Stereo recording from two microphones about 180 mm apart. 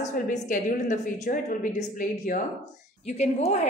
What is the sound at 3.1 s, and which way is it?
Speech, 40° left (ahead or behind).